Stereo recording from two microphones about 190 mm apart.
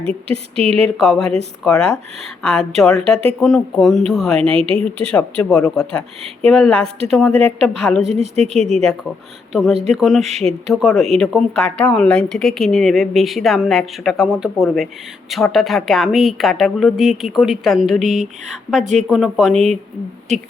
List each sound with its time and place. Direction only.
0.0 s speech: 30° right (ahead or behind)
0.9 s a woman's voice: centre (ahead or behind)
4.5 s speech: 30° right (ahead or behind)
5.1 s a woman's voice: 5° left (ahead or behind)
8.0 s speech: 35° right (ahead or behind)
8.5 s a woman's voice: centre (ahead or behind)